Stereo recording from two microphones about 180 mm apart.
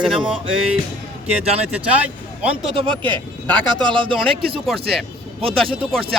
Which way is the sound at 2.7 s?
25° right (ahead or behind).